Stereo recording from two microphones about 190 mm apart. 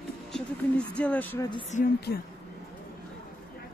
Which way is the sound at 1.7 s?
40° left (ahead or behind).